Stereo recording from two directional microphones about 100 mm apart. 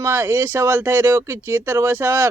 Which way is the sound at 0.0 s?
25° right (ahead or behind).